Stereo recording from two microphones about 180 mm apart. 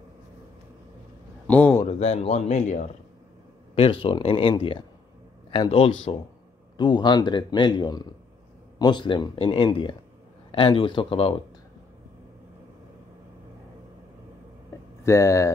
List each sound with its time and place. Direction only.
1.5 s speech: 10° left (ahead or behind)
1.8 s speech: 35° left (ahead or behind)
3.7 s a man's voice: 30° left (ahead or behind)
15.0 s speech: 15° left (ahead or behind)